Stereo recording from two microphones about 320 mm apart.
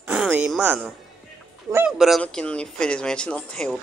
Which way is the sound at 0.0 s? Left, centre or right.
Centre.